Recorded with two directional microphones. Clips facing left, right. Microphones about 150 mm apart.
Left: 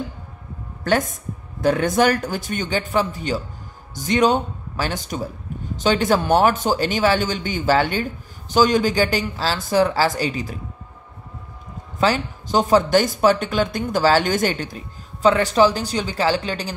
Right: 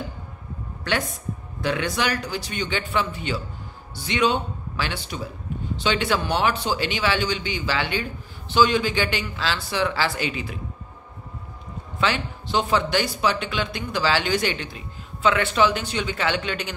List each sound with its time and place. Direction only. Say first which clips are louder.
0.8 s a man's voice: left 6 dB; 45° left (ahead or behind)
12.0 s a man's voice: left 5 dB; 40° left (ahead or behind)